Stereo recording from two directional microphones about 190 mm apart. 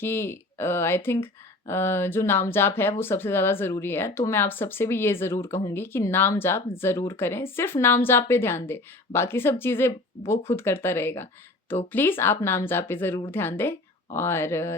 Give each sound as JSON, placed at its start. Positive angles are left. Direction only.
{"t": 0.0, "sound": "speech", "side_deg": 10}